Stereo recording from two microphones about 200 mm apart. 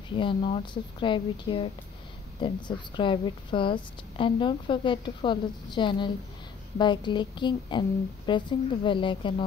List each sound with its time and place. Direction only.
0.1 s a woman's voice: 25° left (ahead or behind)